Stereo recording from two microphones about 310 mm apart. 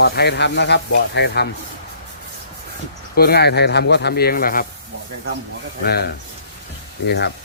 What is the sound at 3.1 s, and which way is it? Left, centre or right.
Speech, left.